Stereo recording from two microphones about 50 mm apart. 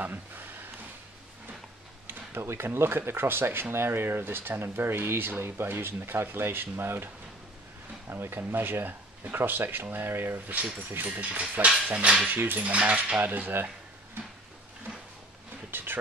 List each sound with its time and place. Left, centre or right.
2.0 s speech: right
8.1 s speech: right
11.9 s coin: right
12.3 s speech: right
12.5 s coin: right
13.2 s speech: right
15.7 s a sound: right